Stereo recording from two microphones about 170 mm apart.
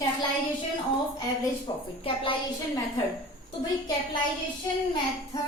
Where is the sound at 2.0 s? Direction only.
30° left (ahead or behind).